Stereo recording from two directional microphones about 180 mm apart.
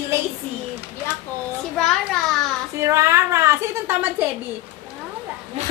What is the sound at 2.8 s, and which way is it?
A woman's voice, 15° right (ahead or behind).